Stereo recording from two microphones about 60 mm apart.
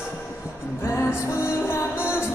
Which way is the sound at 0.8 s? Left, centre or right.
Left.